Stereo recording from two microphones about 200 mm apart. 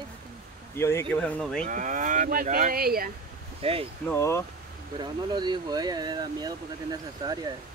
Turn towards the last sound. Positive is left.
turn(degrees=-20)  # may be behind; listen again after turning